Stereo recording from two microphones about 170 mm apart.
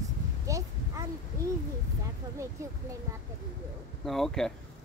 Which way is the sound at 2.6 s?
15° right (ahead or behind).